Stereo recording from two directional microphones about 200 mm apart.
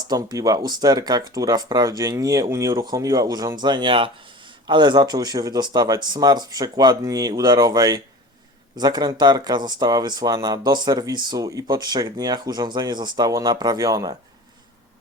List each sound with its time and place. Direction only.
0.0 s speech: 20° right (ahead or behind)